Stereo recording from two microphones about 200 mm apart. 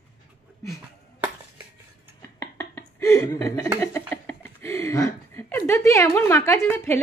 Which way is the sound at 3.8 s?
10° left (ahead or behind).